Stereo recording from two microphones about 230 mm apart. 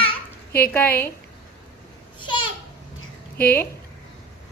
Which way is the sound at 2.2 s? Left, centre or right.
Centre.